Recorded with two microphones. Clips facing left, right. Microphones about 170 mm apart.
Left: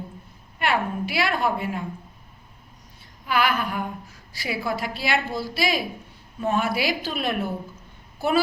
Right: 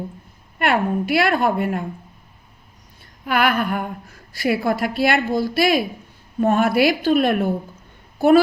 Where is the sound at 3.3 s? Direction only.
55° right (ahead or behind).